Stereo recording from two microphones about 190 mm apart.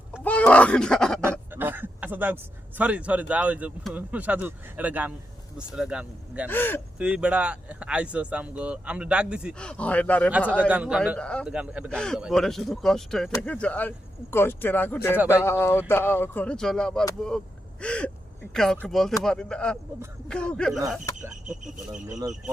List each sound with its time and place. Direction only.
0.2 s speech: 5° left (ahead or behind)
1.2 s speech: 10° right (ahead or behind)
6.5 s speech: 10° left (ahead or behind)
7.0 s speech: 5° right (ahead or behind)
10.7 s speech: 5° right (ahead or behind)
11.5 s speech: 5° right (ahead or behind)
21.2 s speech: 40° right (ahead or behind)